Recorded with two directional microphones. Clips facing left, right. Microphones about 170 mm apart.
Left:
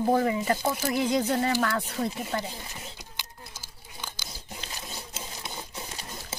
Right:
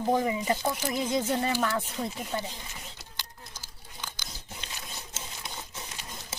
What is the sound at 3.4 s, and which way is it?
Tearing, 10° left (ahead or behind).